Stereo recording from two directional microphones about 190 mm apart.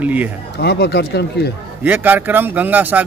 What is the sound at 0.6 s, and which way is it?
Speech, 60° left (ahead or behind).